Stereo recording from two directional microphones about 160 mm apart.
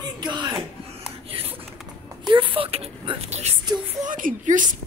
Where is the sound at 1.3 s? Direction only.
35° right (ahead or behind).